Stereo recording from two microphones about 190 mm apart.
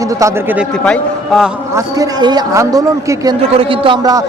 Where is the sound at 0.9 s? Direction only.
Centre (ahead or behind).